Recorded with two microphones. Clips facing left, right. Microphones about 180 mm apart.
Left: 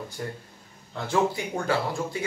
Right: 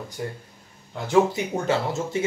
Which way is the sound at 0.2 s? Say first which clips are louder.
Right 3 dB; 10° right (ahead or behind).